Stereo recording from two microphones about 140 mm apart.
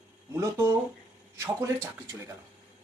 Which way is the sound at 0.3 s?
15° right (ahead or behind).